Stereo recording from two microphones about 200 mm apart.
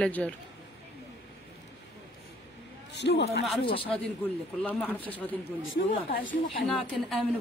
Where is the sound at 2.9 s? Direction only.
60° left (ahead or behind).